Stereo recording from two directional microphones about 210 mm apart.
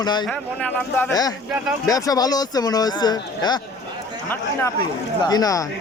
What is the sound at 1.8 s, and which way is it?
Speech, 15° left (ahead or behind).